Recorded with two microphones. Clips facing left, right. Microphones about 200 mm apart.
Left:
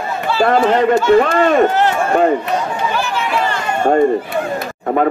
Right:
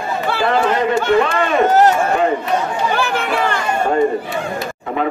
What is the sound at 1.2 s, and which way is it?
Speech, 50° left (ahead or behind).